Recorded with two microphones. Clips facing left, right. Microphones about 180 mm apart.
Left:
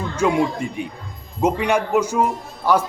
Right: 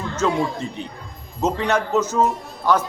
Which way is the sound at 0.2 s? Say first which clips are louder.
Left 3 dB; 15° left (ahead or behind).